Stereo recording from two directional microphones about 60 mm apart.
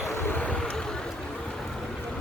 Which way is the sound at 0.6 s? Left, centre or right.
Centre.